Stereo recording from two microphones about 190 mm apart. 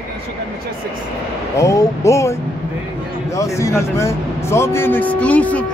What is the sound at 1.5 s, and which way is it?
Speech, 15° left (ahead or behind).